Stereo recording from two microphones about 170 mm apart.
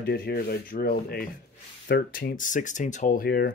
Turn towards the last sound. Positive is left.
turn(degrees=65)  # may be behind; listen again after turning